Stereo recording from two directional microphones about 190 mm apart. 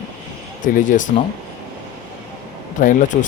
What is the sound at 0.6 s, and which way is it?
Speech, 45° left (ahead or behind).